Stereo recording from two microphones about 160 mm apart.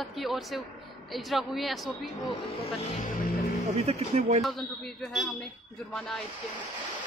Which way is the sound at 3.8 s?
40° right (ahead or behind).